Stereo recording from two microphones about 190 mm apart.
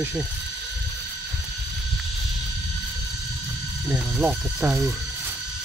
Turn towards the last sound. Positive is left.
turn(degrees=-5)  # may be behind; listen again after turning